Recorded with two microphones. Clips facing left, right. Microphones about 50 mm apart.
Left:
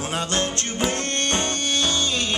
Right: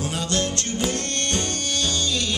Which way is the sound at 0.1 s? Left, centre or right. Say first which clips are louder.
Left 4 dB; left.